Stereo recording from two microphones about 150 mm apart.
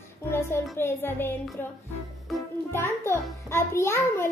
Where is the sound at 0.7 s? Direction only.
15° left (ahead or behind).